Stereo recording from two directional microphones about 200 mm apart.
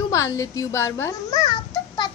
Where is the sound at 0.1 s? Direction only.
15° left (ahead or behind).